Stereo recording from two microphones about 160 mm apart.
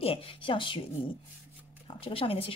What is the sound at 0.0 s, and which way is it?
Speech, 35° left (ahead or behind).